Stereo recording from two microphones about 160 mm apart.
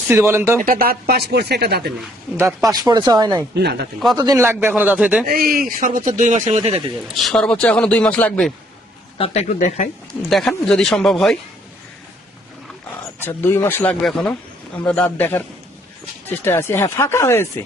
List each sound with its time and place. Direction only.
0.1 s speech: 15° right (ahead or behind)
0.6 s speech: 65° right (ahead or behind); by 1.9 s 80° right
2.4 s speech: 20° right (ahead or behind)
3.5 s speech: 90° right
4.2 s speech: 20° right (ahead or behind)
5.2 s a man's voice: 65° right (ahead or behind); by 6.6 s 50° right (ahead or behind)
7.1 s speech: centre (ahead or behind)
9.1 s speech: 40° left (ahead or behind)
10.2 s speech: 5° left (ahead or behind)
13.1 s speech: 15° left (ahead or behind)
14.0 s speech: centre (ahead or behind)